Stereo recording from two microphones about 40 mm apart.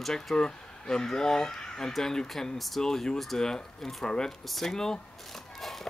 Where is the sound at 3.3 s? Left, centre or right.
Centre.